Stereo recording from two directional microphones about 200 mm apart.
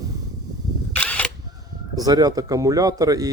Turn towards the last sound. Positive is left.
turn(degrees=-15)  # may be behind; listen again after turning